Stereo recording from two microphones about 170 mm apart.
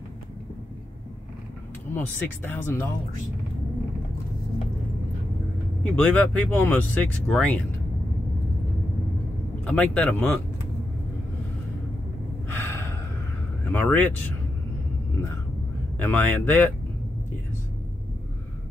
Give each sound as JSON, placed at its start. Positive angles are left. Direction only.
{"t": 2.0, "sound": "speech", "side_deg": 10}
{"t": 5.9, "sound": "speech", "side_deg": 10}
{"t": 9.7, "sound": "speech", "side_deg": 10}
{"t": 12.5, "sound": "gasp", "side_deg": 10}
{"t": 13.7, "sound": "speech", "side_deg": 10}
{"t": 16.0, "sound": "speech", "side_deg": 10}